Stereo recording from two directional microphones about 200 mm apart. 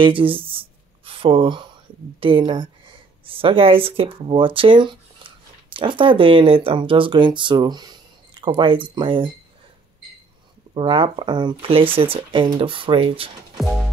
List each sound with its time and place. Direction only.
0.0 s a sound: 25° right (ahead or behind)
2.1 s speech: 25° right (ahead or behind)
10.7 s speech: 25° right (ahead or behind)